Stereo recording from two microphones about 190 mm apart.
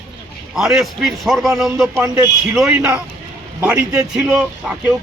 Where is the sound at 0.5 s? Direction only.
Centre (ahead or behind).